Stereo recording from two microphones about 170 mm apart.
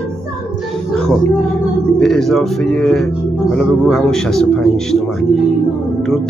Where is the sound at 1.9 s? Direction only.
Centre (ahead or behind).